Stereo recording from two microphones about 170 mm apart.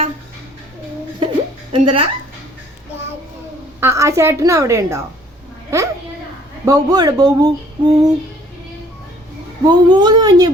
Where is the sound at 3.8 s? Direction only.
15° right (ahead or behind).